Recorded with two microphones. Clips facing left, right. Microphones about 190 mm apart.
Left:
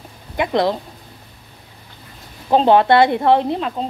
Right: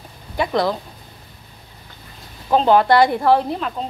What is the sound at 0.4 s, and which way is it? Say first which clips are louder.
Speech: left 2 dB; 25° left (ahead or behind).